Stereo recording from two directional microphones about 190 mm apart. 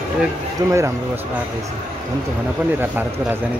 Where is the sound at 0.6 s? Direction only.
20° right (ahead or behind).